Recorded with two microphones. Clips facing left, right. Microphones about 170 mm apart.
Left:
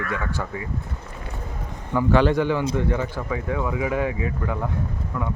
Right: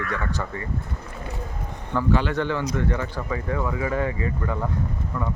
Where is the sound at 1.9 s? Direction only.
10° left (ahead or behind).